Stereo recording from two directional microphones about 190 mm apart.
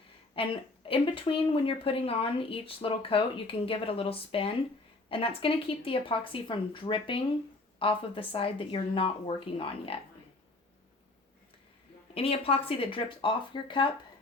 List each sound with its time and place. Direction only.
0.4 s a woman's voice: 30° left (ahead or behind)
12.1 s a woman's voice: 30° left (ahead or behind)